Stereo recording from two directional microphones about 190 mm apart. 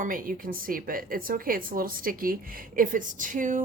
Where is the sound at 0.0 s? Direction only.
45° right (ahead or behind).